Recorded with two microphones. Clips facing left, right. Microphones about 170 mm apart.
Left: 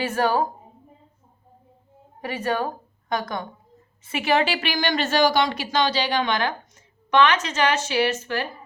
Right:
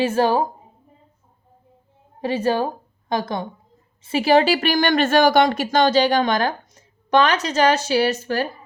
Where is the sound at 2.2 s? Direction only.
25° right (ahead or behind).